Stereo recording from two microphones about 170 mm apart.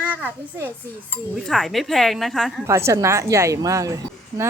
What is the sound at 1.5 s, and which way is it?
A woman's voice, centre (ahead or behind).